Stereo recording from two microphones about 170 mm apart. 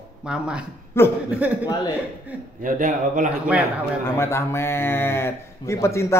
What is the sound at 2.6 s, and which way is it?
Speech, 50° right (ahead or behind).